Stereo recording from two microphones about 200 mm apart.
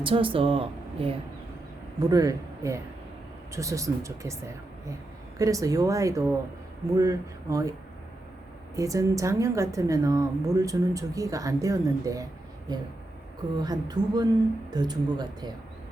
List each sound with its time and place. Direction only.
0.0 s speech: 25° right (ahead or behind)
2.0 s a woman's voice: 20° right (ahead or behind)
5.4 s a woman's voice: 15° right (ahead or behind)
8.7 s a woman's voice: 15° right (ahead or behind)